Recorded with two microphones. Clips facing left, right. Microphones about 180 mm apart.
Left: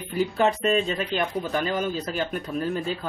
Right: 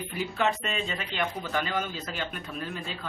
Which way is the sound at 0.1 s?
40° left (ahead or behind).